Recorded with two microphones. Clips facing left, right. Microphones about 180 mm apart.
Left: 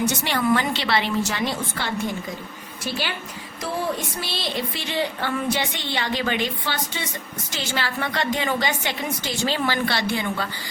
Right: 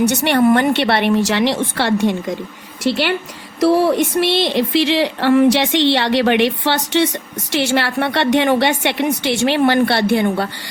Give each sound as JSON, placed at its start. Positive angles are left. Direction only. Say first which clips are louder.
{"t": 0.0, "sound": "speech", "louder": "right 9 dB", "side_deg": -70}